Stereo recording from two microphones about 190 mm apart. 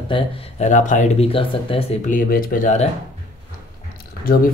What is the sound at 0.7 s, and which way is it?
Speech, 40° left (ahead or behind).